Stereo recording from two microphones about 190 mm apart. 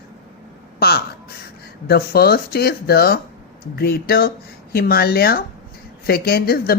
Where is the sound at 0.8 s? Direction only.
55° left (ahead or behind).